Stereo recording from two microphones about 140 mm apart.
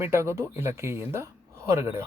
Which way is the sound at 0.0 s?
20° right (ahead or behind).